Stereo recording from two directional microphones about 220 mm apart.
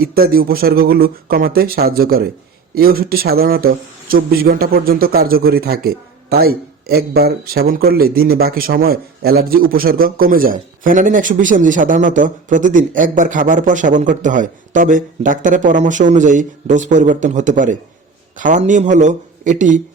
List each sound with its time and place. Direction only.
0.0 s speech: 45° right (ahead or behind)